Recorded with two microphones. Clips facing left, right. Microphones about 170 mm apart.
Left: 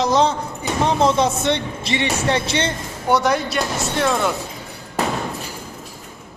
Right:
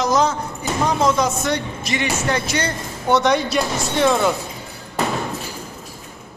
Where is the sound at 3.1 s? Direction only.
10° left (ahead or behind).